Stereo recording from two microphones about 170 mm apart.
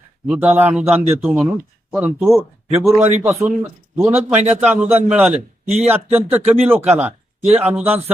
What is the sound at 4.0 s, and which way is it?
A man's voice, 10° right (ahead or behind).